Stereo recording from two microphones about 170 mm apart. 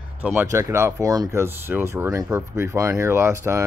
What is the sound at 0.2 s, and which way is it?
Speech, 15° right (ahead or behind).